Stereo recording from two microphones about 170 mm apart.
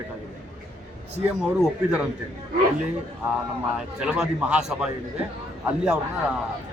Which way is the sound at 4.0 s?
5° right (ahead or behind).